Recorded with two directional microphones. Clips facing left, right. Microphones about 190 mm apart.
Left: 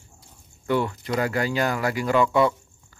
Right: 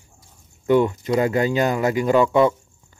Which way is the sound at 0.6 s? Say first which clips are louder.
Right 7 dB; 20° right (ahead or behind).